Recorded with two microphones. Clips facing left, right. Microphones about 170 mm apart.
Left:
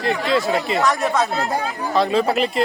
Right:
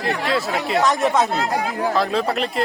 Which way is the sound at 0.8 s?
20° right (ahead or behind).